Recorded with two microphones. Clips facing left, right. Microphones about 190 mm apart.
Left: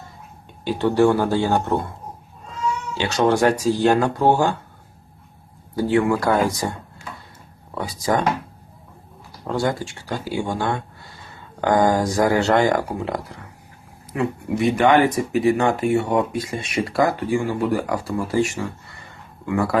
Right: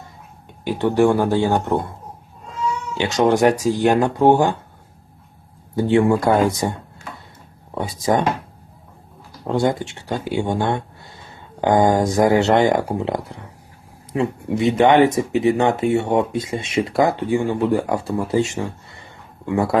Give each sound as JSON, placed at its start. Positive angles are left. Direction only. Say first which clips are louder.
{"t": 0.6, "sound": "speech", "louder": "right 1 dB", "side_deg": -15}
{"t": 3.0, "sound": "speech", "louder": "right 2 dB", "side_deg": -15}
{"t": 5.7, "sound": "speech", "louder": "right 3 dB", "side_deg": -25}
{"t": 7.8, "sound": "speech", "louder": "right 2 dB", "side_deg": -20}
{"t": 9.4, "sound": "speech", "louder": "right 3 dB", "side_deg": -20}